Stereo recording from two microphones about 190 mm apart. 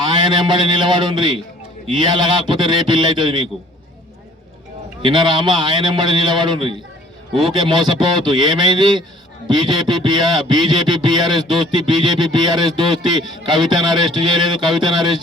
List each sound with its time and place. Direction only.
0.0 s music: 25° right (ahead or behind)
5.0 s music: 25° right (ahead or behind)